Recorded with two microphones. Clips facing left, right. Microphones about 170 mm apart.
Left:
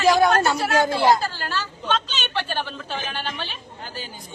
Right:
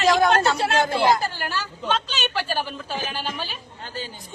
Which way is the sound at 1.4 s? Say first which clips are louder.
Even; 10° right (ahead or behind).